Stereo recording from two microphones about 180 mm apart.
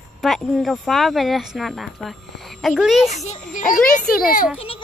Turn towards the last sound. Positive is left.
turn(degrees=50)  # may be behind; listen again after turning